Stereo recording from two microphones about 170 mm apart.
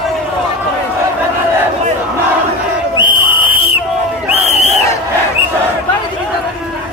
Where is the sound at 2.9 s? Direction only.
30° left (ahead or behind).